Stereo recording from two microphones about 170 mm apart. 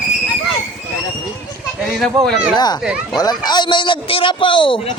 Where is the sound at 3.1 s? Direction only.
25° left (ahead or behind).